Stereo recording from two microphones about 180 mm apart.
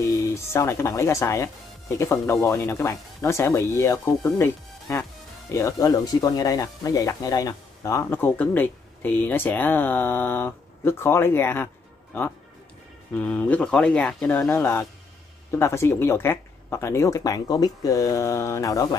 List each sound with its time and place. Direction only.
0.0 s speech: 15° left (ahead or behind)